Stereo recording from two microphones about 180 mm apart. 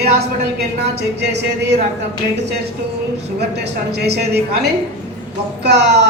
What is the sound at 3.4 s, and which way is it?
A woman's voice, 65° right (ahead or behind).